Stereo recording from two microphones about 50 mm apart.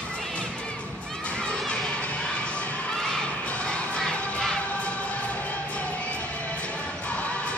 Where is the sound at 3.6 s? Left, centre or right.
Centre.